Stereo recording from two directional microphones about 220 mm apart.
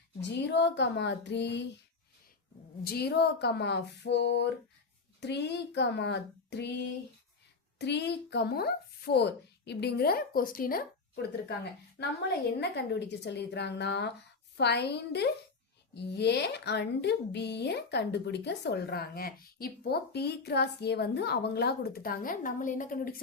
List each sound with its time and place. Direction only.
0.2 s speech: 50° left (ahead or behind)
2.8 s speech: 45° left (ahead or behind)